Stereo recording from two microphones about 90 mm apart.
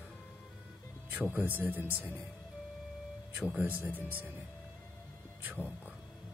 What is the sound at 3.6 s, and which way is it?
Speech, 20° right (ahead or behind).